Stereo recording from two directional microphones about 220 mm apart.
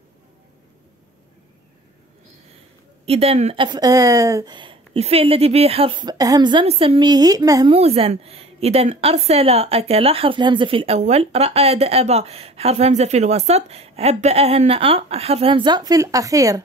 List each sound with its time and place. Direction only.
3.1 s speech: 25° right (ahead or behind)